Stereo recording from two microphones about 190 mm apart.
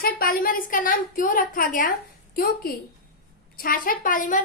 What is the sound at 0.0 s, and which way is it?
A woman's voice, 50° left (ahead or behind).